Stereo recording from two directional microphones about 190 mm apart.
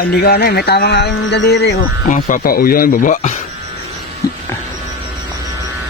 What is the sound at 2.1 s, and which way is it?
Speech, 45° left (ahead or behind).